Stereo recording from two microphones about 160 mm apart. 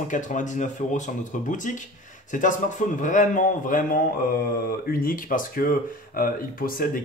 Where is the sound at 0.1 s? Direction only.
50° left (ahead or behind).